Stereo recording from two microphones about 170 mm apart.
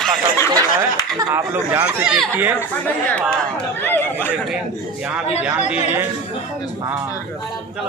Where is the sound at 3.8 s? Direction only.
10° left (ahead or behind).